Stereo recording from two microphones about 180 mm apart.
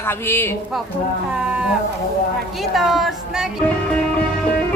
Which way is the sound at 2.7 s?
Centre (ahead or behind).